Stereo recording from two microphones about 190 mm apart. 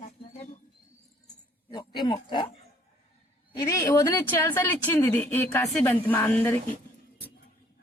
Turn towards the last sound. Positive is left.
turn(degrees=10)  # may be behind; listen again after turning